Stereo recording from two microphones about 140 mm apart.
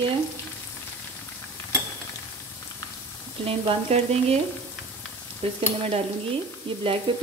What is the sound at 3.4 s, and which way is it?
Frying, 45° right (ahead or behind).